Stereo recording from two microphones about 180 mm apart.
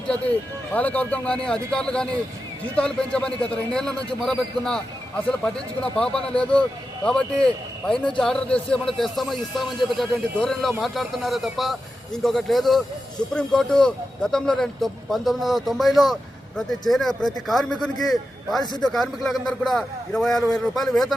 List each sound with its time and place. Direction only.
0.7 s a man's voice: 10° left (ahead or behind)